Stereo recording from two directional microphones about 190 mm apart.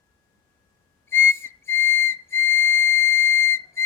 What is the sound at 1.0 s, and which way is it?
Whistle, 10° left (ahead or behind).